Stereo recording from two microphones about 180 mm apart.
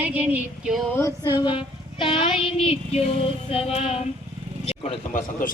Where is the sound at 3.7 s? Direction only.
35° left (ahead or behind).